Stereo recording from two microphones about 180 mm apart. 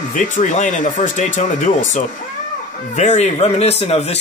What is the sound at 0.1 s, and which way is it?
Speech, 45° left (ahead or behind).